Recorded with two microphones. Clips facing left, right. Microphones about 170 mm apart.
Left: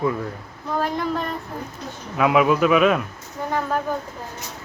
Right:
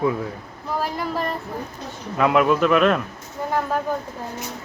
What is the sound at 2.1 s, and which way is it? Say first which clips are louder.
Speech: even; 5° left (ahead or behind).